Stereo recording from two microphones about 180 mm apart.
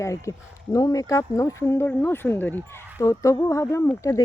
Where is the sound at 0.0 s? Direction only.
15° left (ahead or behind).